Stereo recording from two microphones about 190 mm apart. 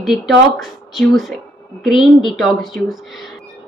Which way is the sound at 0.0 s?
Centre (ahead or behind).